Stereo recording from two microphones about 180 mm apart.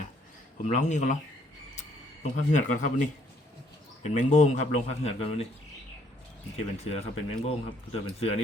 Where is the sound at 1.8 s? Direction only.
40° left (ahead or behind).